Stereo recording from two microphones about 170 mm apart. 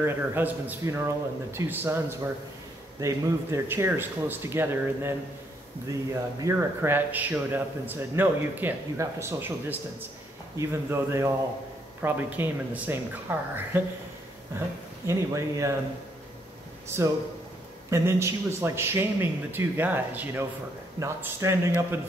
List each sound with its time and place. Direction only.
0.0 s a man's voice: 10° right (ahead or behind)
6.4 s a man's voice: 15° right (ahead or behind)
17.8 s a man's voice: 15° right (ahead or behind)